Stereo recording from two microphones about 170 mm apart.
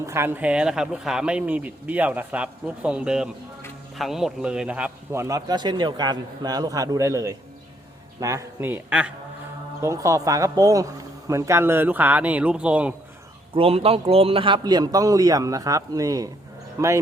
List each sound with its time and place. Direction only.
0.0 s a man's voice: 15° right (ahead or behind)
13.5 s a man's voice: 35° right (ahead or behind); by 17.0 s 15° right (ahead or behind)